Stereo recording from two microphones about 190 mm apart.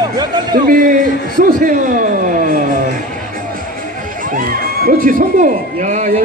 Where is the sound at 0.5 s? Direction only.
45° right (ahead or behind).